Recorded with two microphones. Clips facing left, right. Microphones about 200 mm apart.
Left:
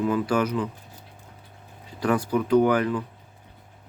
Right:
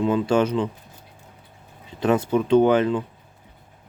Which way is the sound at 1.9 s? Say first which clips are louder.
Right 3 dB; 25° right (ahead or behind).